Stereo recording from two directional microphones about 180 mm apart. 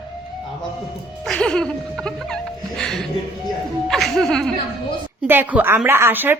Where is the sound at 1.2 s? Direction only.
5° left (ahead or behind).